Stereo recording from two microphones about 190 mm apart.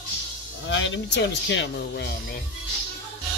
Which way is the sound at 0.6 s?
75° left (ahead or behind).